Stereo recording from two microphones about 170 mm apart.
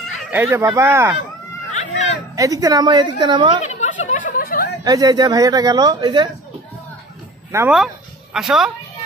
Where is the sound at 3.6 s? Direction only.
45° left (ahead or behind).